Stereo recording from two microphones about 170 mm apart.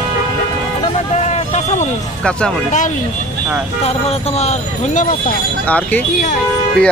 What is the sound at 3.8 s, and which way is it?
Speech, 35° left (ahead or behind).